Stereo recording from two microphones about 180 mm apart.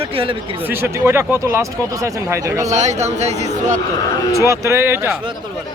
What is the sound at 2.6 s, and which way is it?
Speech, 40° right (ahead or behind).